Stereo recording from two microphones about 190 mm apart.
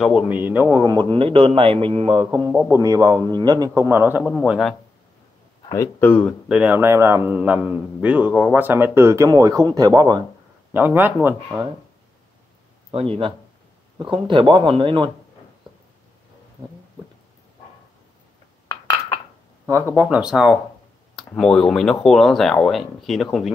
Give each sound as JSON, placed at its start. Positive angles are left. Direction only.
{"t": 0.0, "sound": "a man's voice", "side_deg": -5}
{"t": 5.7, "sound": "speech", "side_deg": 15}
{"t": 6.5, "sound": "a man's voice", "side_deg": -10}
{"t": 10.7, "sound": "a man's voice", "side_deg": -10}
{"t": 12.9, "sound": "a man's voice", "side_deg": -30}
{"t": 19.6, "sound": "a man's voice", "side_deg": -10}